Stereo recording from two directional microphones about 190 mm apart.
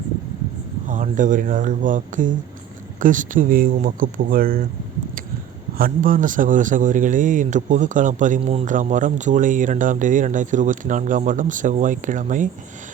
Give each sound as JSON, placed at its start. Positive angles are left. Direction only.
{"t": 0.9, "sound": "speech", "side_deg": -45}
{"t": 5.7, "sound": "speech", "side_deg": -50}